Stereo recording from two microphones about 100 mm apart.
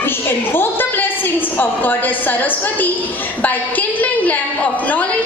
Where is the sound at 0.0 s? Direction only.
20° left (ahead or behind).